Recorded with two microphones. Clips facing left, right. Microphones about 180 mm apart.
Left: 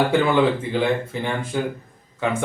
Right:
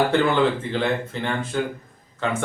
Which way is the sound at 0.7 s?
10° left (ahead or behind).